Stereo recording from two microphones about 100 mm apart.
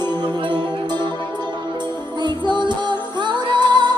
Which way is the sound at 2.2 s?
50° right (ahead or behind).